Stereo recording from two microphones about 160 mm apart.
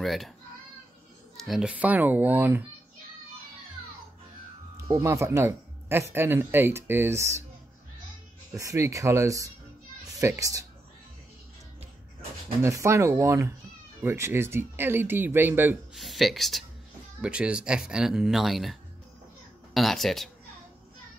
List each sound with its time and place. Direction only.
0.0 s speech: centre (ahead or behind)
1.3 s speech: centre (ahead or behind)
5.0 s speech: 15° right (ahead or behind)
8.5 s speech: 20° right (ahead or behind)
12.6 s speech: 20° right (ahead or behind)
15.9 s speech: centre (ahead or behind)